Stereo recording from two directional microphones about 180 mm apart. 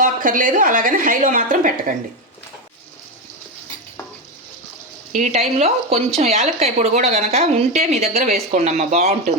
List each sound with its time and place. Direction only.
0.0 s a woman's voice: 50° right (ahead or behind)
5.1 s a woman's voice: 40° right (ahead or behind)